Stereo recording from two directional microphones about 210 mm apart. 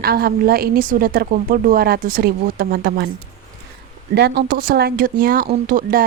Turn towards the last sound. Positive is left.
turn(degrees=-40)  # may be behind; listen again after turning